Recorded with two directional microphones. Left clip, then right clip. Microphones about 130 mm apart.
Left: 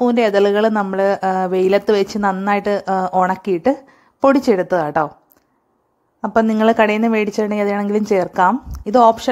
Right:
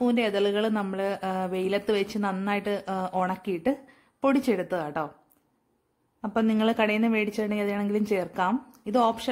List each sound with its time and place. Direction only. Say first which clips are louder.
0.0 s a woman's voice: left 11 dB; 40° left (ahead or behind)
6.2 s a woman's voice: left 11 dB; 35° left (ahead or behind)